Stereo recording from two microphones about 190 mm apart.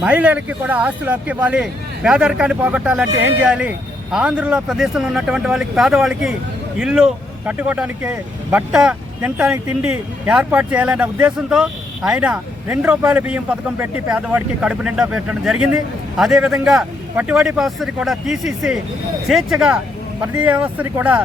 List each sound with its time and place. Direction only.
0.0 s speech: 5° right (ahead or behind)